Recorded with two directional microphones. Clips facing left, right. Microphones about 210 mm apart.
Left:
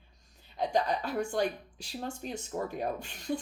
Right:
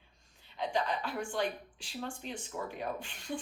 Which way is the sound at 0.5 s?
40° left (ahead or behind).